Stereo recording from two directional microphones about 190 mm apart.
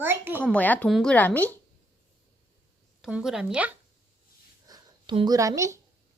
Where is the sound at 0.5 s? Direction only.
10° left (ahead or behind).